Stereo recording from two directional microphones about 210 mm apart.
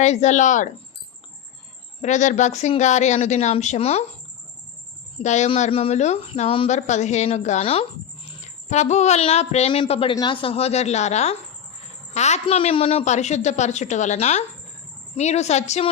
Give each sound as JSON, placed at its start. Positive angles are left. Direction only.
{"t": 0.0, "sound": "speech", "side_deg": 35}
{"t": 2.0, "sound": "speech", "side_deg": 35}
{"t": 5.2, "sound": "speech", "side_deg": 35}